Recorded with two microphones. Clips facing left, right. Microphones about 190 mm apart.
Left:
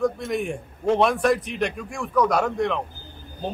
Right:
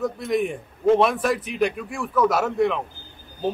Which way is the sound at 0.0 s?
Centre (ahead or behind).